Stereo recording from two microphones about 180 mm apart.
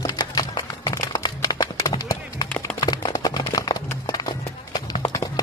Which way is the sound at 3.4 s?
20° left (ahead or behind).